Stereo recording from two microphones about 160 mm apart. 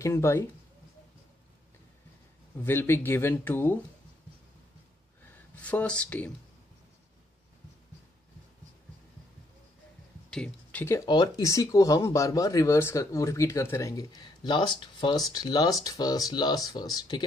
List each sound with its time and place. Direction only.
0.0 s speech: 15° left (ahead or behind)
2.6 s speech: 15° left (ahead or behind)
5.6 s speech: 10° left (ahead or behind)
10.3 s speech: 10° left (ahead or behind); by 17.2 s 25° left (ahead or behind)